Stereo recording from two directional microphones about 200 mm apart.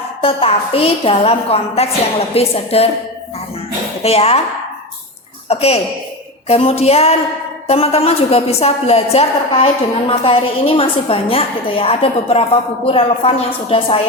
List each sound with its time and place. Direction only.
0.2 s a woman's voice: 30° left (ahead or behind)
4.0 s music: 30° left (ahead or behind)
5.5 s music: 30° left (ahead or behind)
7.7 s a woman's voice: 30° left (ahead or behind)